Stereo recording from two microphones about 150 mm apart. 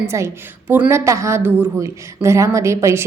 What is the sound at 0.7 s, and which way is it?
A woman's voice, 15° right (ahead or behind).